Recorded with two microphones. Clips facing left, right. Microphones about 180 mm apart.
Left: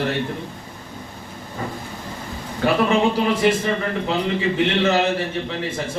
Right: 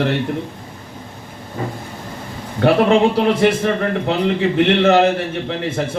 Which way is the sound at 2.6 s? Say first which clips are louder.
Right 5 dB; 65° right (ahead or behind).